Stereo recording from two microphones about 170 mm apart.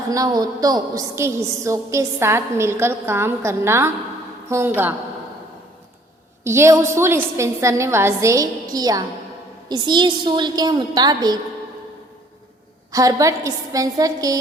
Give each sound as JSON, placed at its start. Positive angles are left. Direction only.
{"t": 0.1, "sound": "a woman's voice", "side_deg": -20}
{"t": 6.4, "sound": "a woman's voice", "side_deg": -15}
{"t": 12.9, "sound": "a woman's voice", "side_deg": -20}